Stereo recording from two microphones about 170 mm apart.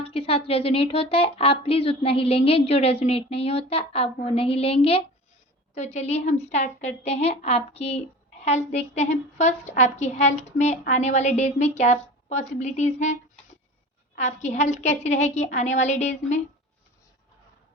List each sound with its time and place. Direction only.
0.1 s a woman's voice: 35° left (ahead or behind)
14.2 s a woman's voice: 45° left (ahead or behind)